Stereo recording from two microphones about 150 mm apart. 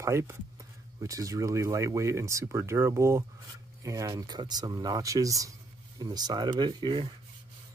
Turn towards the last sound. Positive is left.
turn(degrees=-30)  # may be behind; listen again after turning